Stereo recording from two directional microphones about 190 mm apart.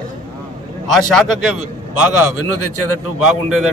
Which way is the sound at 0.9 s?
Centre (ahead or behind).